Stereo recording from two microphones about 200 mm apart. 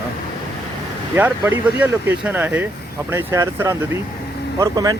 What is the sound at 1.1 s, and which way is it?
Speech, 10° right (ahead or behind).